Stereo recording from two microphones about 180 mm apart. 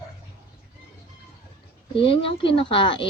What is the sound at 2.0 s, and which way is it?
Speech, 30° left (ahead or behind).